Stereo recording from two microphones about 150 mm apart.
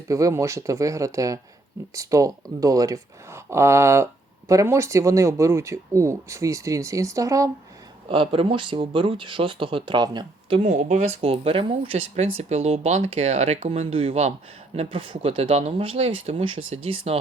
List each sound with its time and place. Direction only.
0.1 s speech: 20° right (ahead or behind)
8.1 s speech: 35° right (ahead or behind)
10.6 s speech: 60° right (ahead or behind)
11.2 s speech: 40° right (ahead or behind)